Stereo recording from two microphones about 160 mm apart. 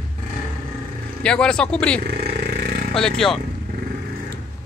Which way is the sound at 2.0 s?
85° right.